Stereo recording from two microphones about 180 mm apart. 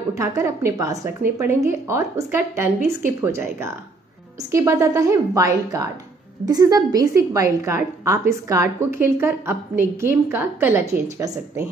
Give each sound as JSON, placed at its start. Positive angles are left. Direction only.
{"t": 0.2, "sound": "a woman's voice", "side_deg": -15}